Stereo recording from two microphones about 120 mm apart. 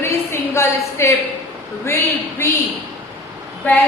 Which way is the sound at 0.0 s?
25° left (ahead or behind).